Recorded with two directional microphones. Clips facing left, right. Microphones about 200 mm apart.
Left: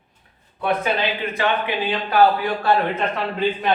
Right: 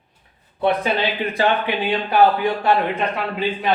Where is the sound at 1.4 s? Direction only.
35° right (ahead or behind).